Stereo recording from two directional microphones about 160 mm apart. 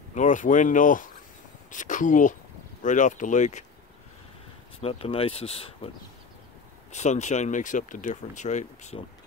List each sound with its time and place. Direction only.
0.1 s speech: 50° left (ahead or behind)
4.8 s speech: 35° left (ahead or behind)
6.9 s speech: 45° left (ahead or behind)